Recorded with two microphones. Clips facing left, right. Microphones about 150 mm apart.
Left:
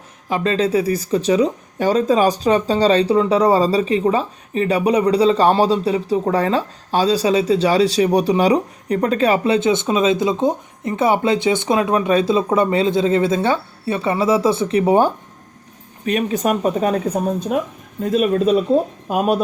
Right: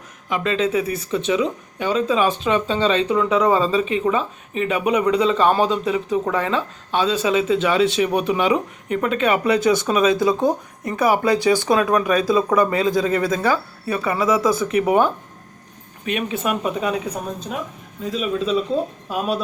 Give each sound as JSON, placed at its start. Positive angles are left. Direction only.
{"t": 0.3, "sound": "speech", "side_deg": 35}